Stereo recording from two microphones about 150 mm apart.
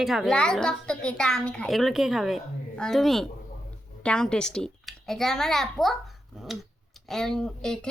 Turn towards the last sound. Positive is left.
turn(degrees=5)  # may be behind; listen again after turning